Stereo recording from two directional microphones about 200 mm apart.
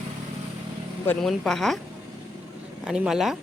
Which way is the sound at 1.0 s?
5° left (ahead or behind).